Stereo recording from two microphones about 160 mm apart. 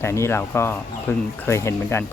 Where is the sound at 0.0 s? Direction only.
15° left (ahead or behind).